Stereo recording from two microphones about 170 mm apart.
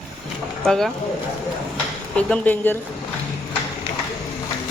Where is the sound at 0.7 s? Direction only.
Centre (ahead or behind).